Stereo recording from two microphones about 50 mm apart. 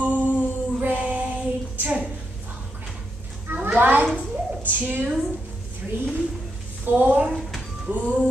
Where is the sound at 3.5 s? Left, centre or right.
Right.